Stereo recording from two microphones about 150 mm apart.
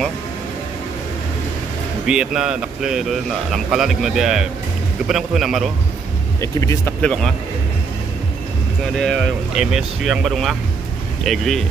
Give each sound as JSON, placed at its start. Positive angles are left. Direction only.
{"t": 2.0, "sound": "speech", "side_deg": -5}
{"t": 6.4, "sound": "speech", "side_deg": 20}
{"t": 7.0, "sound": "speech", "side_deg": 5}
{"t": 8.9, "sound": "speech", "side_deg": 5}